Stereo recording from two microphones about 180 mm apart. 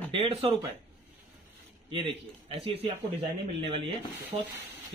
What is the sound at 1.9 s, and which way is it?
Speech, 30° right (ahead or behind).